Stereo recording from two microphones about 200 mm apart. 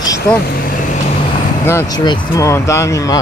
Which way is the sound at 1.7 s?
15° left (ahead or behind).